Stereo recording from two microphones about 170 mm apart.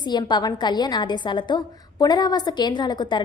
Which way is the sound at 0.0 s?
25° left (ahead or behind).